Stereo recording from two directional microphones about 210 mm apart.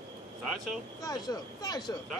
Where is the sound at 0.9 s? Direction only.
15° left (ahead or behind).